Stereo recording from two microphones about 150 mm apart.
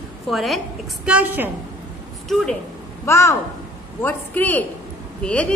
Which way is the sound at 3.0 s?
20° left (ahead or behind).